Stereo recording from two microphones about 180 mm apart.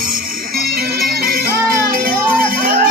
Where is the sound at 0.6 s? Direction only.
60° right (ahead or behind).